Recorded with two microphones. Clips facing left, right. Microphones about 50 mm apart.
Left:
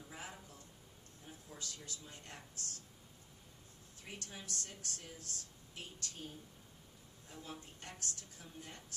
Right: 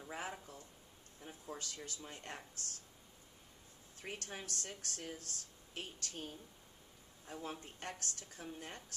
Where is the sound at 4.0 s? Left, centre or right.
Right.